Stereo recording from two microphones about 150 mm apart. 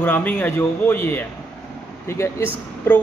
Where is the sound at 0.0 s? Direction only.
10° left (ahead or behind).